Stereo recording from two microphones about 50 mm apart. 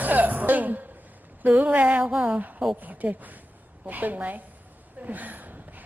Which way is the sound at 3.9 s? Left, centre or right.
Right.